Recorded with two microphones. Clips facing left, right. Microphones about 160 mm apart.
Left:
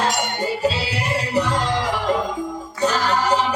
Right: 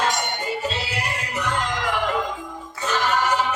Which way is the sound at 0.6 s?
35° left (ahead or behind).